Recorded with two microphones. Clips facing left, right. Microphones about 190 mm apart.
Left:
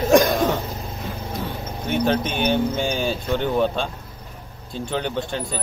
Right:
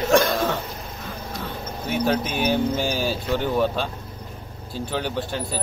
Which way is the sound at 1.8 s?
5° right (ahead or behind).